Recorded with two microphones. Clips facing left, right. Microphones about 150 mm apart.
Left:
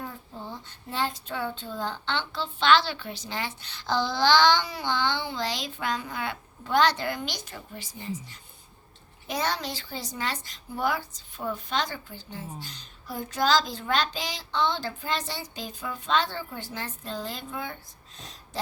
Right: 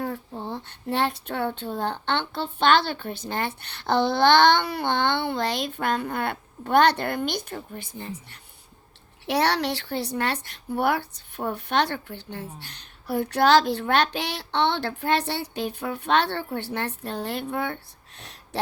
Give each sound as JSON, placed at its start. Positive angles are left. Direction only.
{"t": 0.0, "sound": "speech", "side_deg": -65}
{"t": 9.2, "sound": "speech", "side_deg": -70}